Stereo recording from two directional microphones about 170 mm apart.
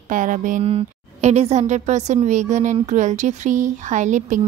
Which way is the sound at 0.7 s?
40° right (ahead or behind).